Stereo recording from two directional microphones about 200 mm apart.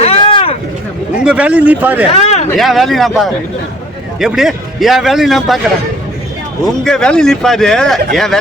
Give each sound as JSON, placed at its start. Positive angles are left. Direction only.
{"t": 0.0, "sound": "vehicle", "side_deg": 30}
{"t": 1.2, "sound": "speech", "side_deg": -5}
{"t": 2.1, "sound": "a sound", "side_deg": 30}
{"t": 2.6, "sound": "speech", "side_deg": 0}
{"t": 6.8, "sound": "speech", "side_deg": 5}